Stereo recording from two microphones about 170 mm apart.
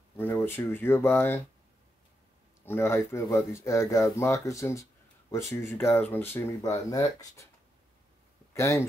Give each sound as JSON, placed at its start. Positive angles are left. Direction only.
{"t": 0.2, "sound": "speech", "side_deg": 15}
{"t": 2.6, "sound": "speech", "side_deg": 15}
{"t": 8.5, "sound": "speech", "side_deg": 15}